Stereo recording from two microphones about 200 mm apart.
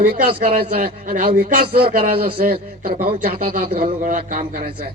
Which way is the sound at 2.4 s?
50° right (ahead or behind).